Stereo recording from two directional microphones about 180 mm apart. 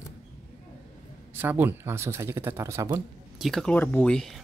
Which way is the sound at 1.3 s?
10° right (ahead or behind).